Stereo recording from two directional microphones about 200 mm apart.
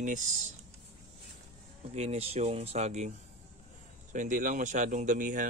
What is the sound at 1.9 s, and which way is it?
Speech, 30° right (ahead or behind).